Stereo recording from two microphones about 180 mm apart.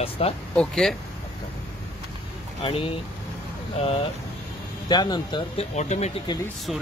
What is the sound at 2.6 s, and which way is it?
Speech, 30° left (ahead or behind).